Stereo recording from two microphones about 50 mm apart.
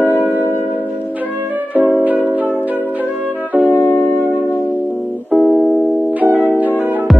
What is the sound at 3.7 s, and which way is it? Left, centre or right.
Music, left.